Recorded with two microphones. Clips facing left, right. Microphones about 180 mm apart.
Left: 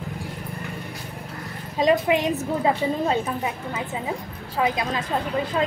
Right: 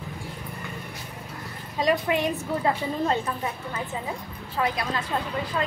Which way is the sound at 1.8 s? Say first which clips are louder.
Left 4 dB; 20° left (ahead or behind).